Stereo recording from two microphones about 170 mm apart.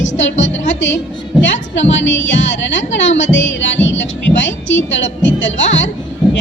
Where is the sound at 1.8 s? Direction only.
90° left.